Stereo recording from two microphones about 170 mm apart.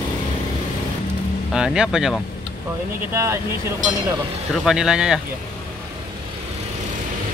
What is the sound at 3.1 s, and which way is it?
Speech, 15° right (ahead or behind).